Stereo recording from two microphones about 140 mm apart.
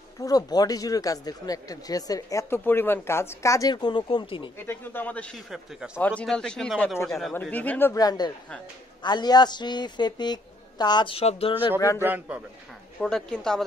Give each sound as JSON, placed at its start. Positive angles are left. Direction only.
{"t": 0.2, "sound": "speech", "side_deg": 25}
{"t": 4.6, "sound": "a man's voice", "side_deg": 15}
{"t": 7.9, "sound": "a woman's voice", "side_deg": 25}
{"t": 12.0, "sound": "a man's voice", "side_deg": -15}
{"t": 13.0, "sound": "a man's voice", "side_deg": 5}